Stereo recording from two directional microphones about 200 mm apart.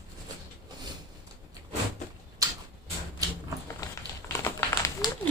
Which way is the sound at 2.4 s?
15° right (ahead or behind).